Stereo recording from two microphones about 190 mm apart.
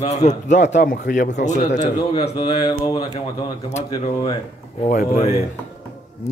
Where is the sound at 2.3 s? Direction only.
25° left (ahead or behind).